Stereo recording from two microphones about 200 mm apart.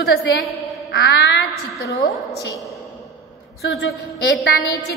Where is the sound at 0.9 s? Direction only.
60° left (ahead or behind).